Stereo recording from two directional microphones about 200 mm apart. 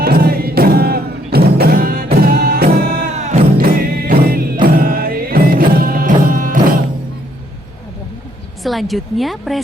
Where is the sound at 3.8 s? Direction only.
50° right (ahead or behind).